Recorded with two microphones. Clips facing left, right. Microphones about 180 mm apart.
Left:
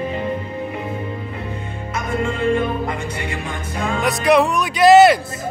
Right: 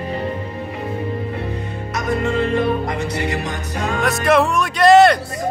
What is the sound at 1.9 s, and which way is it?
Music, 40° right (ahead or behind).